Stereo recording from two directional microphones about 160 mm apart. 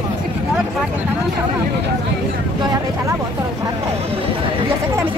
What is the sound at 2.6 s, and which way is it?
Speech, 25° right (ahead or behind).